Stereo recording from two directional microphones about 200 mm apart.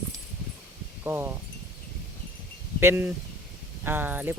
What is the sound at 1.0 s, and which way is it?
Speech, 10° right (ahead or behind).